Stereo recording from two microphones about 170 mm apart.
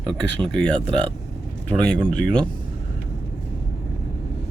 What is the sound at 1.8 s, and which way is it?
Speech, 5° left (ahead or behind).